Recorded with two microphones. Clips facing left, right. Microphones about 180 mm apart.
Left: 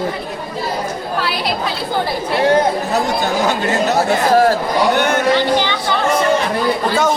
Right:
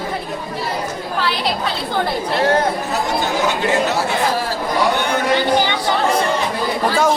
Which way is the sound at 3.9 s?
50° left (ahead or behind).